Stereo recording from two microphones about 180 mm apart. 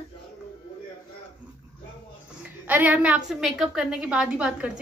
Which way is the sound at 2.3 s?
10° right (ahead or behind).